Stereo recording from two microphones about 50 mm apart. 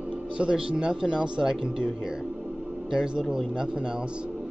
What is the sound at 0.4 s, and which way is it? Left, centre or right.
A man's voice, centre.